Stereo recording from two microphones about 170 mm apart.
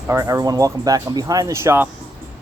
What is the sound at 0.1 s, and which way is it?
Speech, 20° right (ahead or behind).